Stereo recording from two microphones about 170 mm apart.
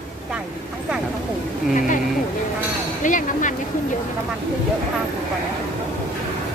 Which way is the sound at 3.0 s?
50° left (ahead or behind).